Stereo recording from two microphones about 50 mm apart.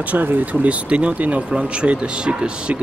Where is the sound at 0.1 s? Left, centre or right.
Right.